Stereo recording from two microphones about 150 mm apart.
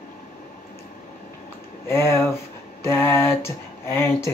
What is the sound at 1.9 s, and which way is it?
Mantra, 15° left (ahead or behind).